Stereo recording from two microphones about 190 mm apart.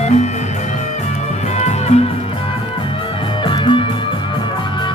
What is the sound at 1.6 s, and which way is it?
Music, 35° left (ahead or behind).